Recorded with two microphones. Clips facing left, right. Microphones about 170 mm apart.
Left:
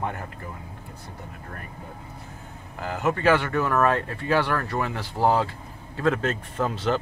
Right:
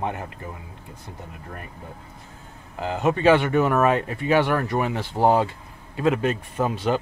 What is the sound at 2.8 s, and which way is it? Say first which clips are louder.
Speech: right 3 dB; 20° right (ahead or behind).